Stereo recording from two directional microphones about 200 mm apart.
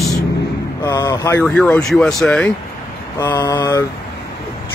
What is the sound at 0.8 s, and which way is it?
Speech, 15° left (ahead or behind).